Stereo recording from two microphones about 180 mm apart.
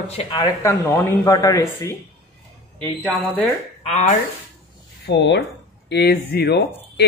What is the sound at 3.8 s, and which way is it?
Speech, 40° left (ahead or behind).